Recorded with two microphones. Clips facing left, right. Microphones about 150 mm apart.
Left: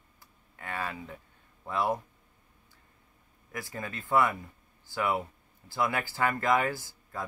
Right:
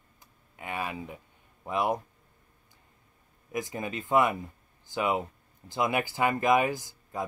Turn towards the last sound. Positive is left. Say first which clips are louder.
# right 4 dB
turn(degrees=-15)  # may be behind; listen again after turning